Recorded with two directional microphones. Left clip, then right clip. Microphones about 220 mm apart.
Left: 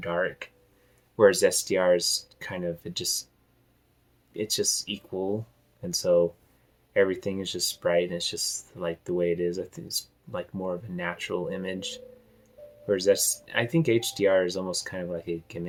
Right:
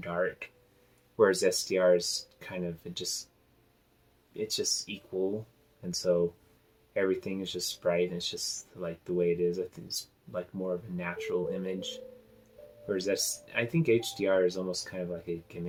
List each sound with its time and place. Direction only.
0.0 s speech: 30° left (ahead or behind)
4.4 s speech: 40° left (ahead or behind)
5.9 s speech: 35° left (ahead or behind)